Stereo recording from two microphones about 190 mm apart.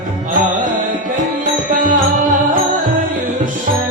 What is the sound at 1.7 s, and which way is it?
Music, 45° right (ahead or behind).